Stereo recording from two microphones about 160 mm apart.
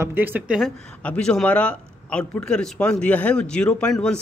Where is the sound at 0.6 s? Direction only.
5° left (ahead or behind).